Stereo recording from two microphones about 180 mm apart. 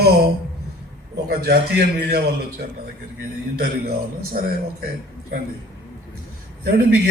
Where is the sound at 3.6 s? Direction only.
55° right (ahead or behind).